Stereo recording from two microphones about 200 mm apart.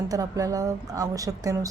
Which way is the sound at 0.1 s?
15° right (ahead or behind).